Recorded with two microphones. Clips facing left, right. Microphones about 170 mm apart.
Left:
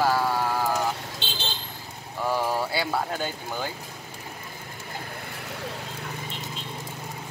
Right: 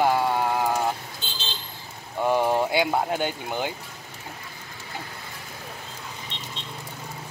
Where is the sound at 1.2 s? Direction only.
80° left.